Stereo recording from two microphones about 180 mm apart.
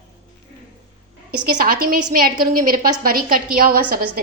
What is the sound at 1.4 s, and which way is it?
A woman's voice, 55° right (ahead or behind).